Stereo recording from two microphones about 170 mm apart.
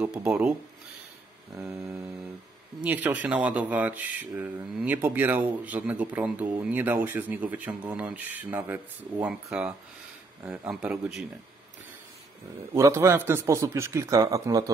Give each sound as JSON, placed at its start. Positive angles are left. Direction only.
{"t": 0.0, "sound": "speech", "side_deg": -10}
{"t": 1.6, "sound": "speech", "side_deg": -10}
{"t": 12.7, "sound": "speech", "side_deg": -15}